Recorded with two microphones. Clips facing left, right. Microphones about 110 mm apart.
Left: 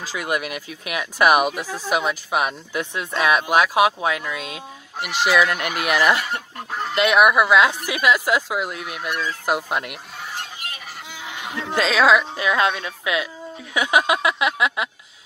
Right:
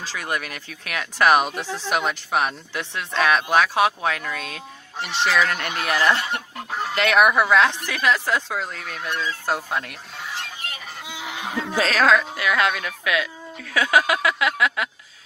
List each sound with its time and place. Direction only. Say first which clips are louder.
0.0 s speech: left 3 dB; 15° left (ahead or behind)
11.1 s fowl: right 3 dB; 20° right (ahead or behind)
11.8 s a woman's voice: left 2 dB; 5° left (ahead or behind)
12.4 s speech: left 1 dB; 25° left (ahead or behind)